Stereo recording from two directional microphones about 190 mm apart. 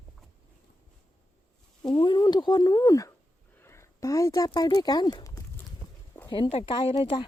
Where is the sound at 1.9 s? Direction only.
25° left (ahead or behind).